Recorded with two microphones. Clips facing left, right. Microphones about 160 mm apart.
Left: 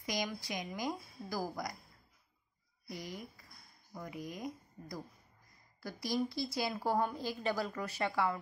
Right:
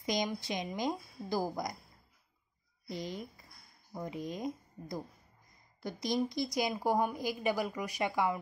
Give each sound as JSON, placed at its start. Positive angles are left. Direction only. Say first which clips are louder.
{"t": 0.0, "sound": "speech", "louder": "right 4 dB", "side_deg": -20}
{"t": 2.9, "sound": "a woman's voice", "louder": "right 5 dB", "side_deg": -25}